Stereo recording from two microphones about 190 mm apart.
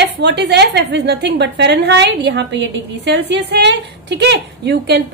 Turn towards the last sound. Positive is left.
turn(degrees=-65)  # may be behind; listen again after turning